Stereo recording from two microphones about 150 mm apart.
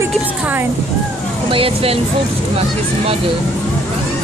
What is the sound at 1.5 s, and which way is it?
Speech, 40° right (ahead or behind).